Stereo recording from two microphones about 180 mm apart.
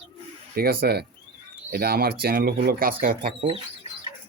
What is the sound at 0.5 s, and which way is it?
Speech, 60° right (ahead or behind).